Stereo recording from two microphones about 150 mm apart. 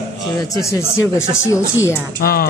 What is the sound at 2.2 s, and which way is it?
Speech, 75° left (ahead or behind).